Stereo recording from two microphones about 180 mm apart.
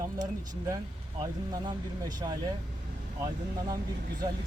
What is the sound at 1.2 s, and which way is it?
Speech, 25° right (ahead or behind).